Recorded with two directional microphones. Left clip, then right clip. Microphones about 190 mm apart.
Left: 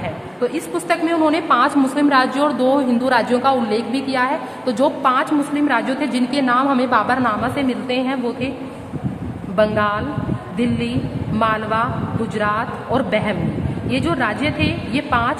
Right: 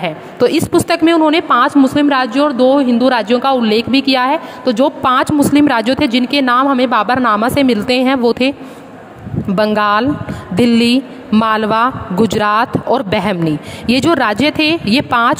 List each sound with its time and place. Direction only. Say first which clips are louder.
0.0 s a woman's voice: right 9 dB; 55° right (ahead or behind)
1.2 s a woman's voice: right 5 dB; 40° right (ahead or behind)
5.0 s a woman's voice: right 5 dB; 50° right (ahead or behind)
7.2 s speech: right 8 dB; 60° right (ahead or behind)
9.6 s speech: right 5 dB; 60° right (ahead or behind)